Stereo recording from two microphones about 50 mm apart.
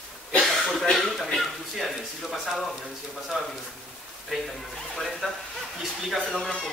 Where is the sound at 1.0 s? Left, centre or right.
Centre.